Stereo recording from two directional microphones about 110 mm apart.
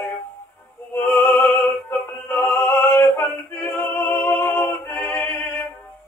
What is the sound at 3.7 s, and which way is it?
Music, 20° left (ahead or behind).